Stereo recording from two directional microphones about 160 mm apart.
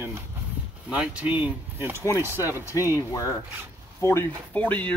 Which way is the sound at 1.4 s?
15° right (ahead or behind).